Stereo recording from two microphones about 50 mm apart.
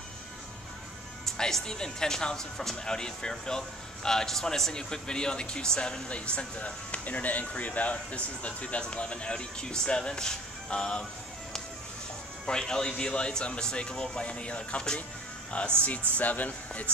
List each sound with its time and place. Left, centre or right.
1.2 s speech: centre
12.4 s speech: centre
16.2 s speech: left